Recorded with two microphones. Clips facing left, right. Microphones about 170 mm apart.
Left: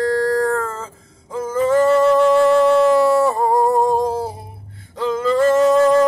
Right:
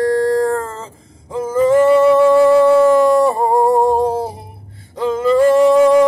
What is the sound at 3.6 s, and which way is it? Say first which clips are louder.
Music: right 3 dB; 15° right (ahead or behind).